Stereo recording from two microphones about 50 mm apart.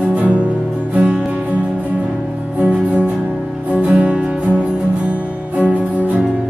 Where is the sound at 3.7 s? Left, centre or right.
Centre.